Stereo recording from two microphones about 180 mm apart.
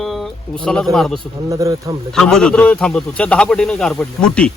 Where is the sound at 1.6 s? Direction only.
20° right (ahead or behind).